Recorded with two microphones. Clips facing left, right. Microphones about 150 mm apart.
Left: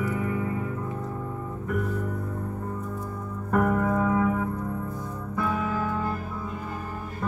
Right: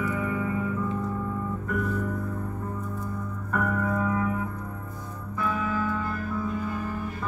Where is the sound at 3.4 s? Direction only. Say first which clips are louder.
Left 4 dB; 45° left (ahead or behind).